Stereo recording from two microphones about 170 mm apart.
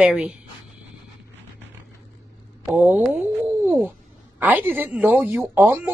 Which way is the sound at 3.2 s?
10° right (ahead or behind).